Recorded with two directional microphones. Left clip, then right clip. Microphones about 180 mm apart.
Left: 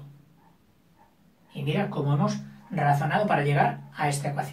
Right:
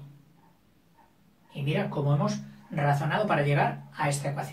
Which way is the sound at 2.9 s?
15° left (ahead or behind).